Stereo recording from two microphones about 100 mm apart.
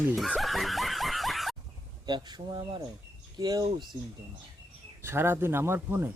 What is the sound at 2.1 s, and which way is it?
Speech, 45° right (ahead or behind).